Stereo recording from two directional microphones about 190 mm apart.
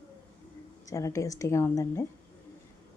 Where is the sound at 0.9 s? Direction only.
15° left (ahead or behind).